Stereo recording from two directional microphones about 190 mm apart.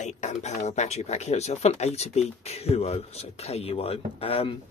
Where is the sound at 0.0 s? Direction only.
40° left (ahead or behind).